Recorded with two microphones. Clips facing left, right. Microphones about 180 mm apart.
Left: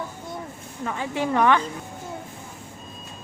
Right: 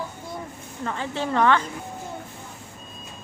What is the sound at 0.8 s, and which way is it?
Speech, 10° left (ahead or behind).